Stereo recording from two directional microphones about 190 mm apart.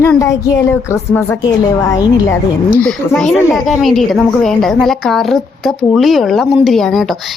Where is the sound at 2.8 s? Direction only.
5° left (ahead or behind).